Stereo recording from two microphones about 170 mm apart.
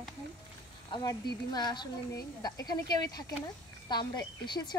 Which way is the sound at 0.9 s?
25° left (ahead or behind).